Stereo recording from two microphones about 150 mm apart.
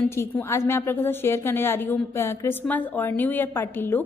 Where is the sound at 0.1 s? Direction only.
15° left (ahead or behind).